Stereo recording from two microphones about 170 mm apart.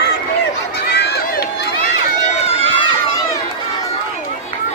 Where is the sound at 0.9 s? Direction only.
80° left.